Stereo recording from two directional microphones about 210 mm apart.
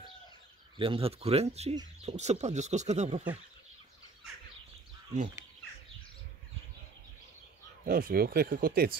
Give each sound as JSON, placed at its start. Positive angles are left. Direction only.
{"t": 0.7, "sound": "speech", "side_deg": -25}
{"t": 7.8, "sound": "speech", "side_deg": -45}